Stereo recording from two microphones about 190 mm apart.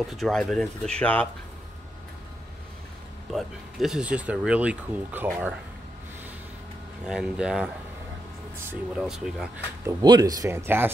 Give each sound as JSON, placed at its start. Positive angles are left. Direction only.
{"t": 0.0, "sound": "speech", "side_deg": 0}
{"t": 3.3, "sound": "speech", "side_deg": 0}
{"t": 7.1, "sound": "speech", "side_deg": -5}
{"t": 9.8, "sound": "speech", "side_deg": -20}